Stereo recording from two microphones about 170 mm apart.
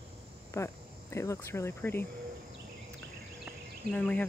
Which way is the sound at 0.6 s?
15° left (ahead or behind).